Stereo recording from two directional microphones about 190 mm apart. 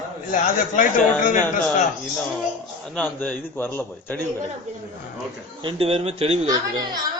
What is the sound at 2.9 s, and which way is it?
A man's voice, 10° left (ahead or behind).